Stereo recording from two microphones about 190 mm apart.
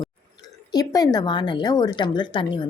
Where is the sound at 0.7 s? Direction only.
20° left (ahead or behind).